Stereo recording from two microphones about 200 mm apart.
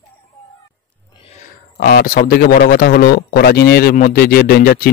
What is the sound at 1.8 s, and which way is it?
Speech, 45° left (ahead or behind).